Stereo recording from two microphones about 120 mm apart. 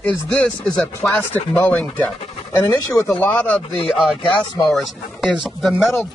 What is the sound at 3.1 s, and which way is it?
Speech, 15° left (ahead or behind).